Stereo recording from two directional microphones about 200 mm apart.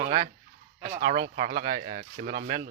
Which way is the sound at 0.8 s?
45° right (ahead or behind).